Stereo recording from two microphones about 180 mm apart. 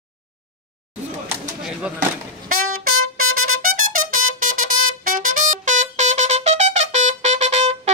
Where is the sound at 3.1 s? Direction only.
50° right (ahead or behind).